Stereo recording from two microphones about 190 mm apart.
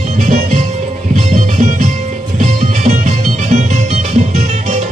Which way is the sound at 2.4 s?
40° right (ahead or behind).